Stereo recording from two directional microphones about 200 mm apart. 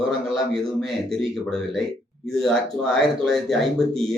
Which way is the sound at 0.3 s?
Centre (ahead or behind).